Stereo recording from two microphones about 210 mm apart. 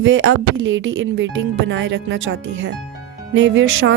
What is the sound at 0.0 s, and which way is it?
Speech, 65° right (ahead or behind).